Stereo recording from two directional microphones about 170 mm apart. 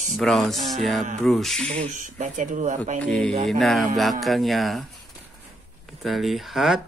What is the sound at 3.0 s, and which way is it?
Speech, 5° left (ahead or behind).